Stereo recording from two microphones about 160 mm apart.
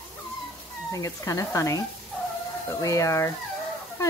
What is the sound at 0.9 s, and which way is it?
Speech, 20° left (ahead or behind).